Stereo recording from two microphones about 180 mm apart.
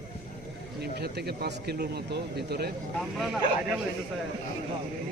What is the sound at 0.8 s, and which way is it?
Speech, 65° right (ahead or behind).